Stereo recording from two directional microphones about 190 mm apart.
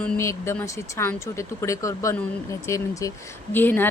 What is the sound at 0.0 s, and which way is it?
A woman's voice, 15° left (ahead or behind).